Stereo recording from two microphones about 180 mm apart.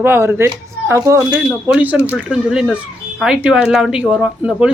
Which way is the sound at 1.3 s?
5° right (ahead or behind).